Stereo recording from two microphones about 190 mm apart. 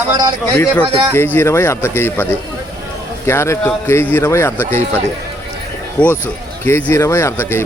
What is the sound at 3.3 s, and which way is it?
Speech, 15° left (ahead or behind).